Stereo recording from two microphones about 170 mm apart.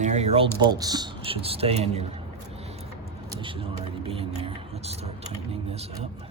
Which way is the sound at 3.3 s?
30° right (ahead or behind).